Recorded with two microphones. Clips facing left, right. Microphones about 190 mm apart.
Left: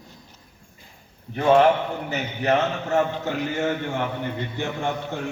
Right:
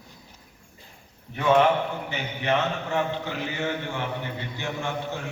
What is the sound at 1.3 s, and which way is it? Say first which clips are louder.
A man's voice: left 3 dB; 35° left (ahead or behind).